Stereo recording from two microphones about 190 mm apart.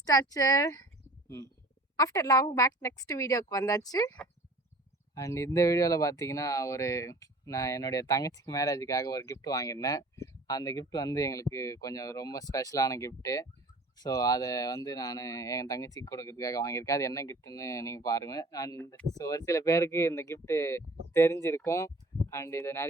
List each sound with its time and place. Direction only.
0.0 s speech: 20° left (ahead or behind)
2.0 s speech: 20° left (ahead or behind)
5.1 s speech: 15° left (ahead or behind)